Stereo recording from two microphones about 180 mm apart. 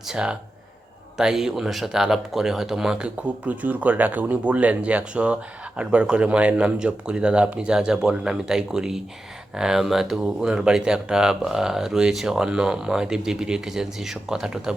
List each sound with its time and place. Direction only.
0.1 s speech: 5° right (ahead or behind)